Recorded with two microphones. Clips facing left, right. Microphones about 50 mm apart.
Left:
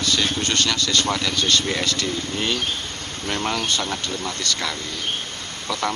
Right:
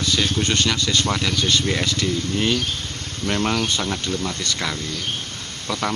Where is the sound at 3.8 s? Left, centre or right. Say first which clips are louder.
Right 2 dB; centre.